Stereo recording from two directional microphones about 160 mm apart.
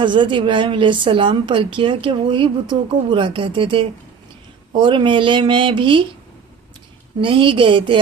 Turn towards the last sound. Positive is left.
turn(degrees=-30)  # may be behind; listen again after turning